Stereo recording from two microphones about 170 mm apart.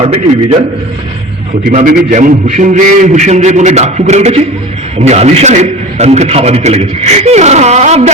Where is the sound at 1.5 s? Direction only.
45° right (ahead or behind).